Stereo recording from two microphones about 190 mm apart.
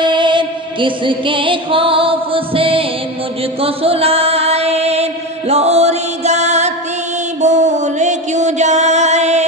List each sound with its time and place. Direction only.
0.0 s music: 25° right (ahead or behind)
3.6 s chant: 30° right (ahead or behind)
7.4 s music: 40° right (ahead or behind)